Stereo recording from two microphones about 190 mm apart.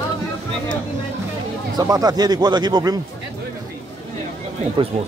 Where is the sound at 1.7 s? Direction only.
20° right (ahead or behind).